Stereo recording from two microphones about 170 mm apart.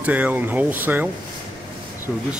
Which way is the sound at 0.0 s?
10° right (ahead or behind).